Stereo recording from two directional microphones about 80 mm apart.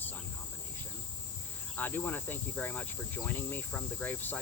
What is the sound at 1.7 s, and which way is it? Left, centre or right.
Insect, left.